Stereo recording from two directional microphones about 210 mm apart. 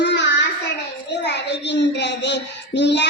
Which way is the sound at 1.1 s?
55° left (ahead or behind).